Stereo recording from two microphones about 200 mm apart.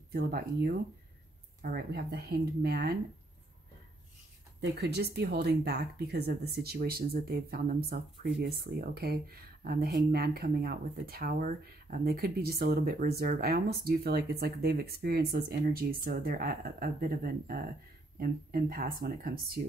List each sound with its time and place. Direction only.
0.1 s speech: 50° right (ahead or behind)
4.6 s speech: 55° right (ahead or behind)